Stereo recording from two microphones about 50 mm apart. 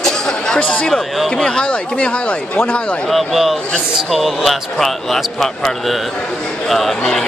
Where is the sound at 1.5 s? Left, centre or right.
Left.